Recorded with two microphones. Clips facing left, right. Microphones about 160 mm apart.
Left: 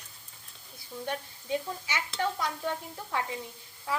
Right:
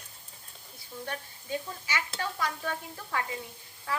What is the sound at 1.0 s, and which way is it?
Speech, 20° left (ahead or behind).